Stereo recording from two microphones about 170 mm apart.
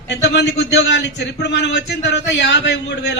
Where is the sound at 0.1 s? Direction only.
90° left.